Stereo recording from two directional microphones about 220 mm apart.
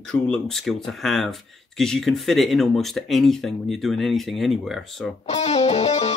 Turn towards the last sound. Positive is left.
turn(degrees=30)  # may be behind; listen again after turning